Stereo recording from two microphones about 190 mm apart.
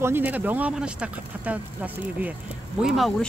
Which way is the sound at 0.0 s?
10° right (ahead or behind).